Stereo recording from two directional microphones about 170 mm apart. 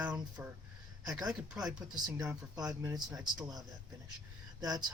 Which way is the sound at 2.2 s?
20° right (ahead or behind).